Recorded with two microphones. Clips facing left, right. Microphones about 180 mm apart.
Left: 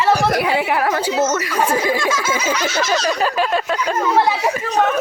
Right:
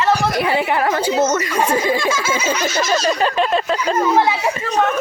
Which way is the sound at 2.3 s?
25° right (ahead or behind).